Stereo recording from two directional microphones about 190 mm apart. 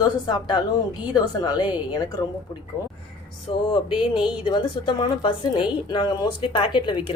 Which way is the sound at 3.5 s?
30° left (ahead or behind).